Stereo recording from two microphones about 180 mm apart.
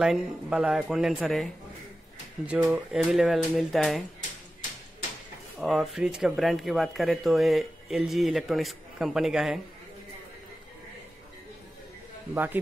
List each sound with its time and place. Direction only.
0.0 s speech: 5° right (ahead or behind)
5.6 s speech: centre (ahead or behind)